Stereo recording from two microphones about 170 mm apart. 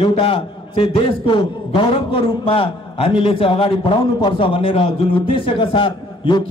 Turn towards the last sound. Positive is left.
turn(degrees=30)  # may be behind; listen again after turning